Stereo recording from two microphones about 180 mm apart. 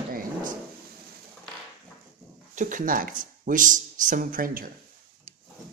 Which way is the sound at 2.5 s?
45° right (ahead or behind).